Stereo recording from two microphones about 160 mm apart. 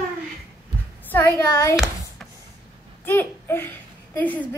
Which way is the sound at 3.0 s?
15° left (ahead or behind).